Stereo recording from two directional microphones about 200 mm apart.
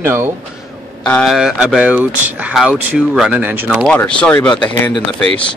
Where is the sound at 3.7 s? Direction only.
5° left (ahead or behind).